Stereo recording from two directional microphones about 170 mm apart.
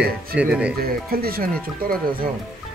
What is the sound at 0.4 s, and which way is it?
Speech, 5° right (ahead or behind).